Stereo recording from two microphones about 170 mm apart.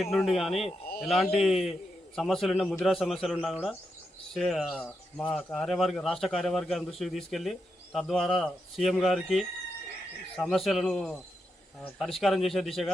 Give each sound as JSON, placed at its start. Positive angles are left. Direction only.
{"t": 0.1, "sound": "speech", "side_deg": 0}
{"t": 10.5, "sound": "speech", "side_deg": 0}